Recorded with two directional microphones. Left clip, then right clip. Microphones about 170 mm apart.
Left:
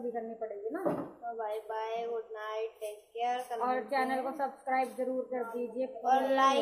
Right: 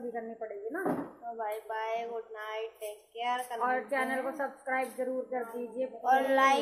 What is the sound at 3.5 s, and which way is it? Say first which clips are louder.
A woman's voice: even; 15° left (ahead or behind).